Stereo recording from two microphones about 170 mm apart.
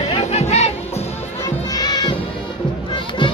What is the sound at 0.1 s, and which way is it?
Music, 40° left (ahead or behind).